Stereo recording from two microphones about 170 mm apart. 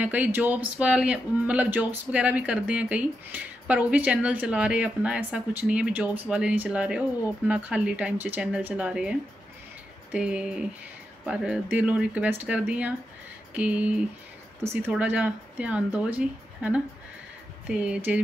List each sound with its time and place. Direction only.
0.0 s a man's voice: 10° right (ahead or behind)
10.1 s a man's voice: 5° right (ahead or behind)